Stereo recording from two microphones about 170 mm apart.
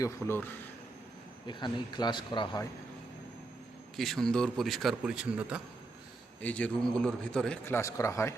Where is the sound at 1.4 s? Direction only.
25° left (ahead or behind).